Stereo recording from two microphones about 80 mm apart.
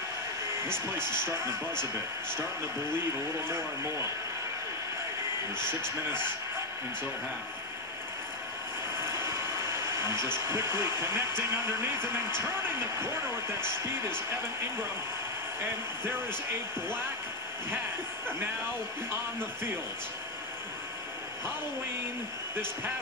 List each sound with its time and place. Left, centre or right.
3.4 s speech: right
9.2 s a sound: right
10.2 s speech: right